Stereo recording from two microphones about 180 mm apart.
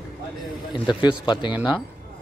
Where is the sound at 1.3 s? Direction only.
25° left (ahead or behind).